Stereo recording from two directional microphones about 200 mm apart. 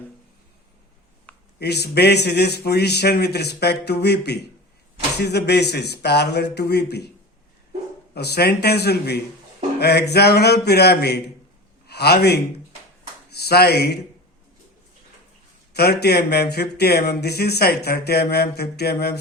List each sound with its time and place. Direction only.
1.5 s a man's voice: 55° left (ahead or behind)
8.1 s a man's voice: 55° left (ahead or behind)
15.7 s speech: 55° left (ahead or behind)